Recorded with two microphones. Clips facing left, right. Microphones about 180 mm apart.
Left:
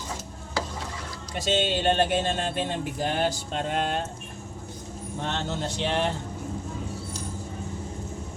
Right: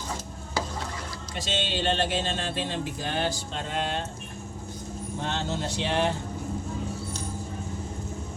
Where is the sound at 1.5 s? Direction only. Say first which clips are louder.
Left 4 dB; 50° left (ahead or behind).